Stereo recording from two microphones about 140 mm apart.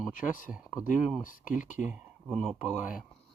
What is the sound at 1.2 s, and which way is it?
Speech, 70° left (ahead or behind).